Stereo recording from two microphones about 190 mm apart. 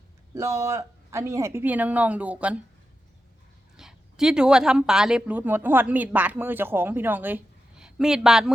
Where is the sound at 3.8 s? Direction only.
5° right (ahead or behind).